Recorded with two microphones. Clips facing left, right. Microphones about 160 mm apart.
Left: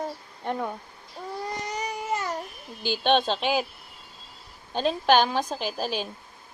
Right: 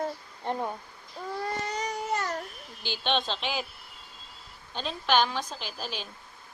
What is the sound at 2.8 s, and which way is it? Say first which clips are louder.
Speech: left 7 dB; 50° left (ahead or behind).